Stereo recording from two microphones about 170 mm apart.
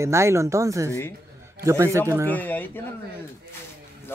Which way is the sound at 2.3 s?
10° left (ahead or behind).